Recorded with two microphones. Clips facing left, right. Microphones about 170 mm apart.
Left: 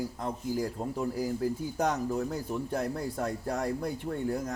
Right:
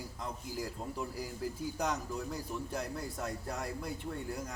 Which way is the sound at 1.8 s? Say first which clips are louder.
Left 8 dB; 50° left (ahead or behind).